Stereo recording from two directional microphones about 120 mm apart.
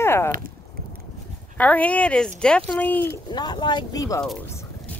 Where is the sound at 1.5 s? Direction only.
10° left (ahead or behind).